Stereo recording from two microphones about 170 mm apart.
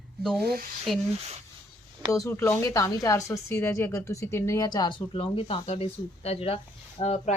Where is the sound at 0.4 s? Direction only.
60° right (ahead or behind).